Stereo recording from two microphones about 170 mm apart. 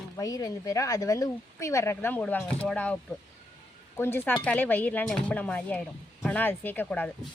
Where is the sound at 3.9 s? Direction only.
15° left (ahead or behind).